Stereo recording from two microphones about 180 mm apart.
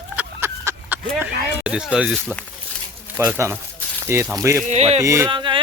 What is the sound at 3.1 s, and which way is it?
Speech, 10° right (ahead or behind).